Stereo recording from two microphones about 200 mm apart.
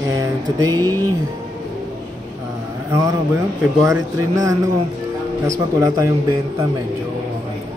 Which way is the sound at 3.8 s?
15° right (ahead or behind).